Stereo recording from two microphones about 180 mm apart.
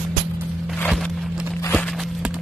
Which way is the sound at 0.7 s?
5° left (ahead or behind).